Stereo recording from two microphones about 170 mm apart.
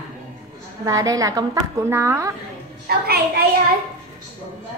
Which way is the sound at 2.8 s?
65° right (ahead or behind).